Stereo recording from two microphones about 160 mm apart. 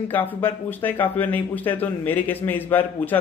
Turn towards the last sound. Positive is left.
turn(degrees=10)  # may be behind; listen again after turning